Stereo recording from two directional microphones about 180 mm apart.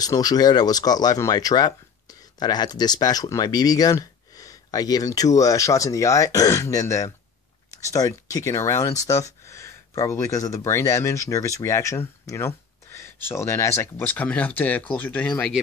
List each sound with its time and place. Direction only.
0.0 s speech: 20° left (ahead or behind); by 15.6 s 5° left (ahead or behind)